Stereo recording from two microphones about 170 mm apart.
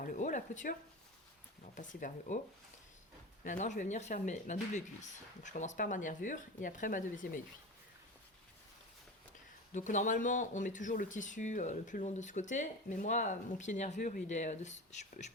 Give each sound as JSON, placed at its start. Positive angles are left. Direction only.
{"t": 0.0, "sound": "a sound", "side_deg": 50}
{"t": 1.7, "sound": "speech", "side_deg": 50}
{"t": 3.4, "sound": "speech", "side_deg": 45}
{"t": 9.7, "sound": "speech", "side_deg": 45}